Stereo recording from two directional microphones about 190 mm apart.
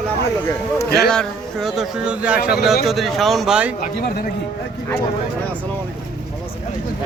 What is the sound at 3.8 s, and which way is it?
Speech, 50° left (ahead or behind).